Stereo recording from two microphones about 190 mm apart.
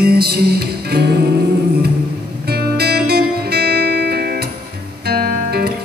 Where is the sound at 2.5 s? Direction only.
55° right (ahead or behind).